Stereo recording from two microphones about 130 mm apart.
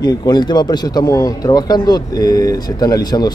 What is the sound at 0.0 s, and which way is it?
Speech, 30° left (ahead or behind).